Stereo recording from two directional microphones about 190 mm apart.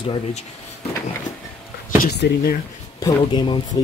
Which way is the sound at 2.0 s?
60° left (ahead or behind).